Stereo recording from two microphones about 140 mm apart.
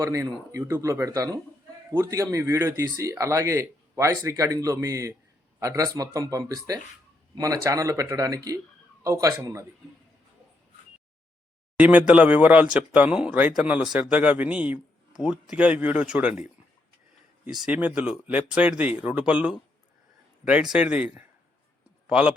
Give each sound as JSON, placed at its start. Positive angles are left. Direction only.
{"t": 0.0, "sound": "speech", "side_deg": -25}
{"t": 11.8, "sound": "speech", "side_deg": -10}
{"t": 17.4, "sound": "speech", "side_deg": -10}
{"t": 20.7, "sound": "speech", "side_deg": -10}
{"t": 22.0, "sound": "a sound", "side_deg": -10}